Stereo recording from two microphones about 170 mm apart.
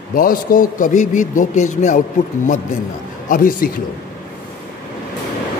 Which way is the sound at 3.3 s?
55° left (ahead or behind).